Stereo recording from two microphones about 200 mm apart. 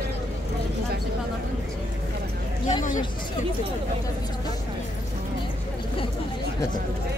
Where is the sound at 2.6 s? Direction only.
40° left (ahead or behind).